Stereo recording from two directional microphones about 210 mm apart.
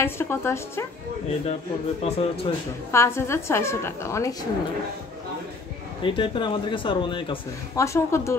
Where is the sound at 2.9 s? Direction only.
10° left (ahead or behind).